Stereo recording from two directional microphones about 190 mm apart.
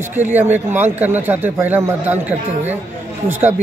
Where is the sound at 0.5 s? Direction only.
10° right (ahead or behind).